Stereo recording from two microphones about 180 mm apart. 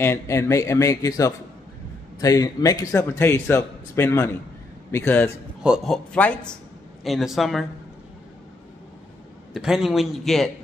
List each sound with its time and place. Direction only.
0.0 s a man's voice: 15° left (ahead or behind)
5.6 s a man's voice: 5° right (ahead or behind)
6.1 s a man's voice: 5° left (ahead or behind)
9.5 s a man's voice: centre (ahead or behind)